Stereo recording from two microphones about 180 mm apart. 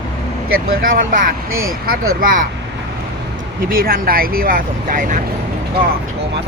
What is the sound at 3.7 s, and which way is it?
Speech, 55° right (ahead or behind).